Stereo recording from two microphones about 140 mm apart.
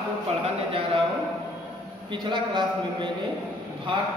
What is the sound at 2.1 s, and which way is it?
Speech, 35° right (ahead or behind).